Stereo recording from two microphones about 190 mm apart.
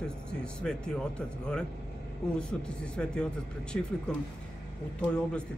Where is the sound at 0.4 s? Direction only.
5° left (ahead or behind).